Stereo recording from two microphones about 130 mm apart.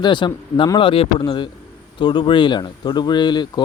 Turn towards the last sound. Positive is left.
turn(degrees=35)  # may be behind; listen again after turning